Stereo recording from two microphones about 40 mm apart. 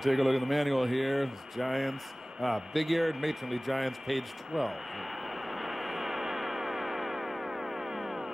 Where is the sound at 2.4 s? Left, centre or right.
Centre.